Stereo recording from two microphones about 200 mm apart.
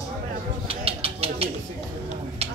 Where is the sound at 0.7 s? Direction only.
30° right (ahead or behind).